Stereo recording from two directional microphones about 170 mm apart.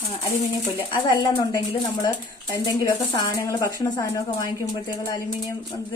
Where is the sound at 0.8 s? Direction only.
30° left (ahead or behind).